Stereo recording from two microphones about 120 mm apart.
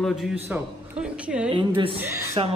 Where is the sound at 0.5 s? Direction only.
10° right (ahead or behind).